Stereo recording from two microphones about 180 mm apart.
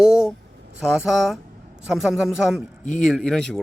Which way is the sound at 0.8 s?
5° right (ahead or behind).